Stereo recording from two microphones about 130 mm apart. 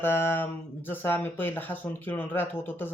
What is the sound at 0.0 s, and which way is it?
Speech, 15° left (ahead or behind).